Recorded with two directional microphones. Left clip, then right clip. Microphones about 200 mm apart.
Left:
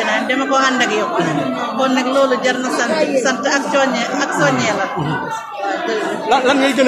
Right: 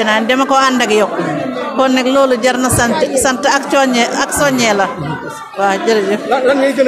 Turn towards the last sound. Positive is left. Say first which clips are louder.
# right 2 dB
turn(degrees=20)  # may be behind; listen again after turning